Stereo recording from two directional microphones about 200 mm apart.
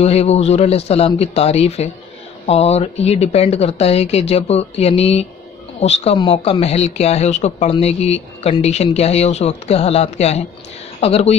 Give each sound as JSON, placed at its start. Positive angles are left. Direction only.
{"t": 0.0, "sound": "speech", "side_deg": 30}